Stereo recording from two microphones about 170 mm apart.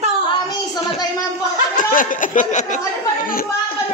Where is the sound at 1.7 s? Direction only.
50° left (ahead or behind).